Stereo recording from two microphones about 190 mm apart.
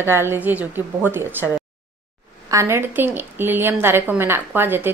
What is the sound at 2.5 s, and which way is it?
A woman's voice, 15° right (ahead or behind).